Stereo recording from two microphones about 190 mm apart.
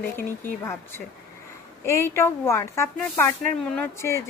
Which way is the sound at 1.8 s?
15° left (ahead or behind).